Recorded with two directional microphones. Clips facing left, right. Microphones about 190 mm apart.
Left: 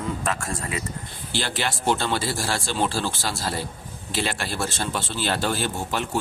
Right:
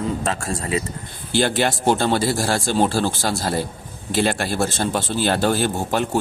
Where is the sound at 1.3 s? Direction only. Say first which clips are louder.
Right 9 dB; 50° right (ahead or behind).